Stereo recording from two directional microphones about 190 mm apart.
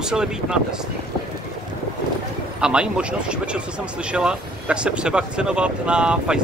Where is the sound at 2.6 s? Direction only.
5° right (ahead or behind).